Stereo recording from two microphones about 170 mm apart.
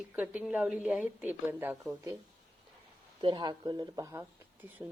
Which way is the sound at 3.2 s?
25° right (ahead or behind).